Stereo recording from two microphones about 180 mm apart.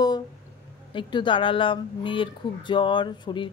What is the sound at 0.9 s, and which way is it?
Speech, 25° left (ahead or behind).